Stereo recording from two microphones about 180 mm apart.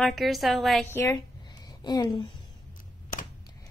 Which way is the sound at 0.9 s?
15° left (ahead or behind).